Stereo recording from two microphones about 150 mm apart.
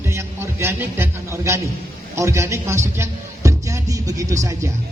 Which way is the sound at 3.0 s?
20° right (ahead or behind).